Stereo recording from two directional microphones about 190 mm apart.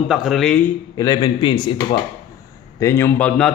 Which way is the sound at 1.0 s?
20° left (ahead or behind).